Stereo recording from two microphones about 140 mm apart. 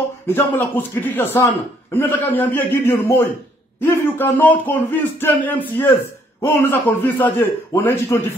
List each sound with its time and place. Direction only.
0.3 s a man's voice: 15° left (ahead or behind)